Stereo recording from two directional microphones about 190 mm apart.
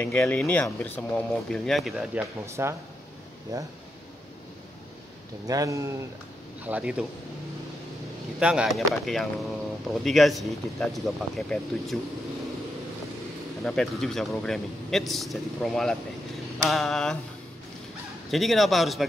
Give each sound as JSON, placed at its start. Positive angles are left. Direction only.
{"t": 0.0, "sound": "speech", "side_deg": 10}
{"t": 2.4, "sound": "speech", "side_deg": -15}
{"t": 5.5, "sound": "speech", "side_deg": -15}
{"t": 8.4, "sound": "speech", "side_deg": -5}
{"t": 13.7, "sound": "speech", "side_deg": 0}
{"t": 18.3, "sound": "speech", "side_deg": 0}